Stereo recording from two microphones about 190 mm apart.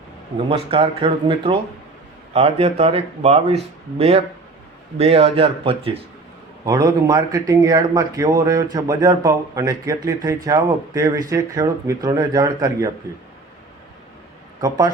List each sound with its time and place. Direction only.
0.3 s speech: 30° right (ahead or behind)
6.7 s speech: 20° right (ahead or behind)
14.6 s speech: 15° right (ahead or behind)